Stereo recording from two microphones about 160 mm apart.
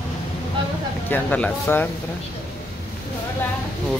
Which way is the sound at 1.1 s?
10° left (ahead or behind).